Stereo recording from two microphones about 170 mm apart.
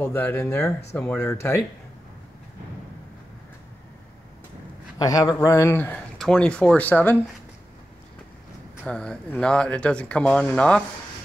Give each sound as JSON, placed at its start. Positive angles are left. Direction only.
{"t": 0.0, "sound": "speech", "side_deg": 10}
{"t": 4.9, "sound": "speech", "side_deg": 20}
{"t": 8.8, "sound": "speech", "side_deg": 5}